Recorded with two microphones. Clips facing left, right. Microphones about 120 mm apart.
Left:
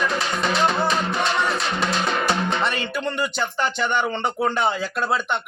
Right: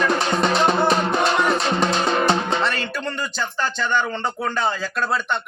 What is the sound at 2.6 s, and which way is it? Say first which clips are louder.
Speech: even; 15° left (ahead or behind).